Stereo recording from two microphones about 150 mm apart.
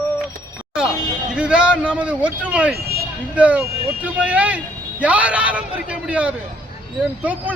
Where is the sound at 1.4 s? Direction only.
5° right (ahead or behind).